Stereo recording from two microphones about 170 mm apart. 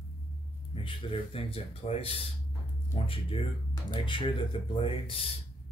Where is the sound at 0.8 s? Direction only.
30° left (ahead or behind).